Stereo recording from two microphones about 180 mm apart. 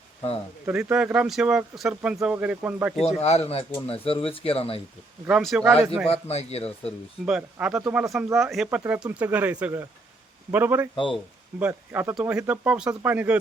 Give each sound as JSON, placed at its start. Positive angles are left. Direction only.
{"t": 0.6, "sound": "speech", "side_deg": -10}
{"t": 3.2, "sound": "speech", "side_deg": 35}
{"t": 5.4, "sound": "speech", "side_deg": 0}
{"t": 6.1, "sound": "speech", "side_deg": 35}
{"t": 6.8, "sound": "speech", "side_deg": -5}